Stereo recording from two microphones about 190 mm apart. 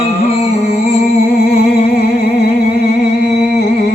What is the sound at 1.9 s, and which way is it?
Music, 55° left (ahead or behind).